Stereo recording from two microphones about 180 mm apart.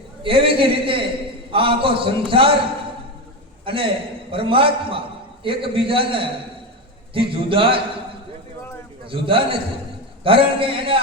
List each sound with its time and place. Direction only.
0.2 s a man's voice: 30° right (ahead or behind)
3.7 s a man's voice: 30° right (ahead or behind)
9.0 s a man's voice: 30° right (ahead or behind)